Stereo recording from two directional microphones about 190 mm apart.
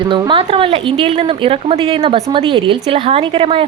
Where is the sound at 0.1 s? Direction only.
25° right (ahead or behind).